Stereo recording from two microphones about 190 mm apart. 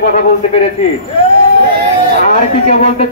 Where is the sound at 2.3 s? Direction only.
35° left (ahead or behind).